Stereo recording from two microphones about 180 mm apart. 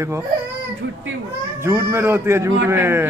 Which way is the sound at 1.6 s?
15° right (ahead or behind).